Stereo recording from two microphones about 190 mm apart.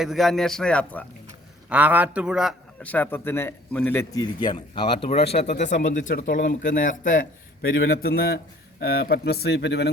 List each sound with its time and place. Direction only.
0.0 s a man's voice: centre (ahead or behind)
1.7 s a man's voice: 10° right (ahead or behind)
2.8 s a man's voice: 10° left (ahead or behind); by 9.9 s 65° left (ahead or behind)